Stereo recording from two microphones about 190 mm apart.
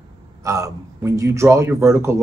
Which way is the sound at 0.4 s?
15° right (ahead or behind).